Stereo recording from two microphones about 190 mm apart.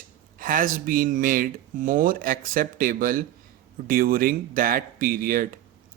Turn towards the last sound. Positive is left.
turn(degrees=-45)  # may be behind; listen again after turning